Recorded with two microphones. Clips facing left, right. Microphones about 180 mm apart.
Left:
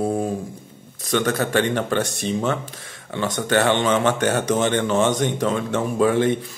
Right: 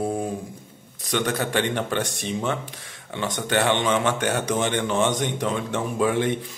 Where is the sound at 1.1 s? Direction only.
15° right (ahead or behind).